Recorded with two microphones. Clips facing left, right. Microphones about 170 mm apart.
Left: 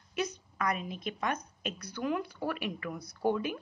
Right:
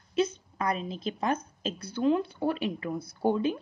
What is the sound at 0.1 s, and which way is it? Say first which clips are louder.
A woman's voice: right 7 dB; 25° right (ahead or behind).